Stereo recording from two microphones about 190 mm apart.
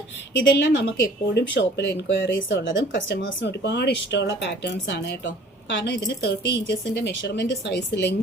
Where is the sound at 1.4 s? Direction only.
65° left (ahead or behind).